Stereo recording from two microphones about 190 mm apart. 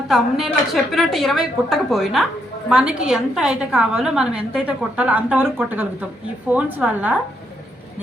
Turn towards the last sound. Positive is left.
turn(degrees=-10)  # may be behind; listen again after turning